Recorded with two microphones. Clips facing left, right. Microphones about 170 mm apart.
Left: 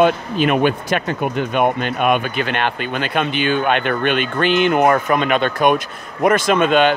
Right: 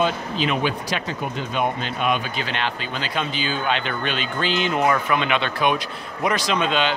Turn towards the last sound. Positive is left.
turn(degrees=50)  # may be behind; listen again after turning